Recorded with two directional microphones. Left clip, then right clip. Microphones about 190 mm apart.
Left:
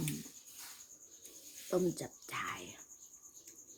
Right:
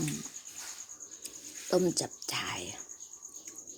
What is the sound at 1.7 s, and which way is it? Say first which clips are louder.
Speech: right 6 dB; 15° right (ahead or behind).